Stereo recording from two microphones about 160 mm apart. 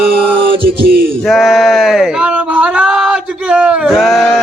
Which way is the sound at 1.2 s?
Centre (ahead or behind).